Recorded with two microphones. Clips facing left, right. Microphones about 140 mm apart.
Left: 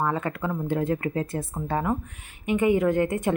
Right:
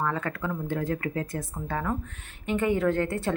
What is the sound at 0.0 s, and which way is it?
Speech, 20° left (ahead or behind).